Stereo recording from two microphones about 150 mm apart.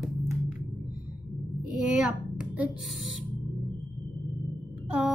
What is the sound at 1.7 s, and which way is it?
A child's voice, 5° right (ahead or behind).